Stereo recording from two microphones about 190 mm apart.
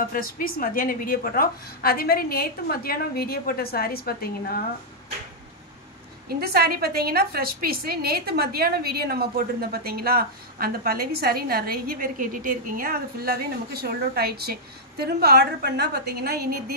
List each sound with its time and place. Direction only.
0.1 s a woman's voice: 50° left (ahead or behind)
6.2 s a woman's voice: 55° right (ahead or behind)